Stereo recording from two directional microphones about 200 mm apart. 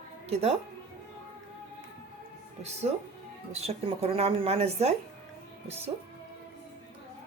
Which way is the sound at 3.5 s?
30° right (ahead or behind).